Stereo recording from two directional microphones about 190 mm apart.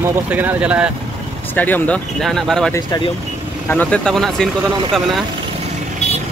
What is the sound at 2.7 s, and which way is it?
Speech, 20° left (ahead or behind).